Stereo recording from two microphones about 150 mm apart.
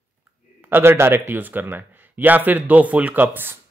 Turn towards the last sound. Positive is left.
turn(degrees=-15)  # may be behind; listen again after turning